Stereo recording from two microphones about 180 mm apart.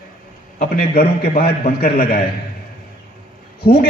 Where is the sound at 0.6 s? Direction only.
55° left (ahead or behind).